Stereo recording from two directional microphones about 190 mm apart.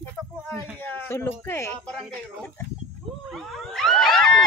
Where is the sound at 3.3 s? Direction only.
Centre (ahead or behind).